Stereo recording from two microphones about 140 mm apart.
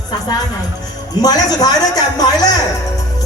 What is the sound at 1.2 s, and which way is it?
A man's voice, 25° left (ahead or behind).